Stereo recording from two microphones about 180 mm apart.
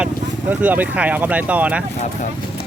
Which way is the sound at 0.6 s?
10° right (ahead or behind).